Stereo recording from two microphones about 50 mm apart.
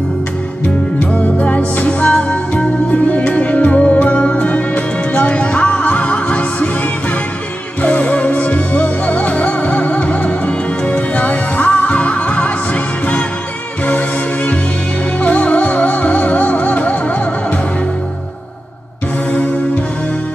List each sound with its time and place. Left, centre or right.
0.9 s music: left
7.8 s music: left
13.8 s music: left